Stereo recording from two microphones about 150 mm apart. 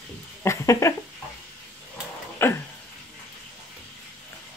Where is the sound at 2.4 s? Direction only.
15° left (ahead or behind).